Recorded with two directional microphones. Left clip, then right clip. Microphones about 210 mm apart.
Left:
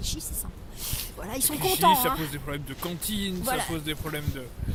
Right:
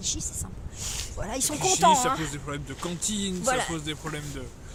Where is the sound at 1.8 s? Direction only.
20° right (ahead or behind).